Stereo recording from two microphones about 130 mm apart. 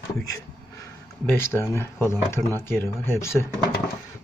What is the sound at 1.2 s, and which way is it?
Speech, 15° left (ahead or behind).